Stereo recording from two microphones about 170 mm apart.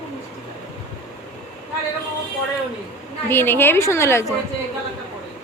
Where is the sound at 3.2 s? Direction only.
10° left (ahead or behind).